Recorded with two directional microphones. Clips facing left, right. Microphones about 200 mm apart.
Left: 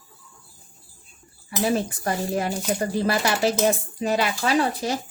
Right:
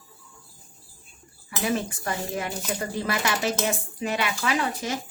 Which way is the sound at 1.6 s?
35° left (ahead or behind).